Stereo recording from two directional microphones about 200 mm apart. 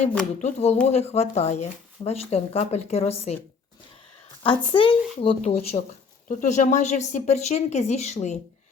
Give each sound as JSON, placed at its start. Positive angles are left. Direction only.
{"t": 0.3, "sound": "speech", "side_deg": 35}
{"t": 4.4, "sound": "speech", "side_deg": 25}